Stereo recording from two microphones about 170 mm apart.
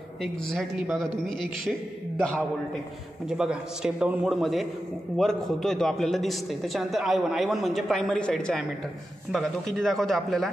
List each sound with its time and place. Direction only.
0.2 s a man's voice: centre (ahead or behind)
3.3 s a man's voice: 5° right (ahead or behind)